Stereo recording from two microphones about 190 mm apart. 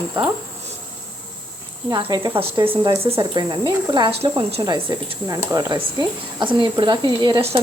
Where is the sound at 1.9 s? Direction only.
20° right (ahead or behind).